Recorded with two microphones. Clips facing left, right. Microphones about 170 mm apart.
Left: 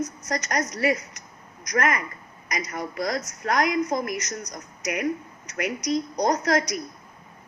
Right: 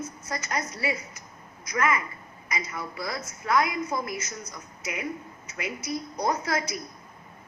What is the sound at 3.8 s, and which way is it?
Speech, 40° left (ahead or behind).